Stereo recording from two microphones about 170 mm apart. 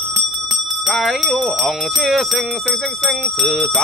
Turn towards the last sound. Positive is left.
turn(degrees=5)  # may be behind; listen again after turning